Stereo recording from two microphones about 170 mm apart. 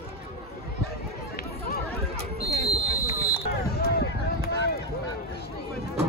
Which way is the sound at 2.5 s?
40° right (ahead or behind).